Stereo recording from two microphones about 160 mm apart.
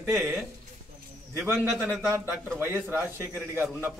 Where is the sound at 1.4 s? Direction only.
15° right (ahead or behind).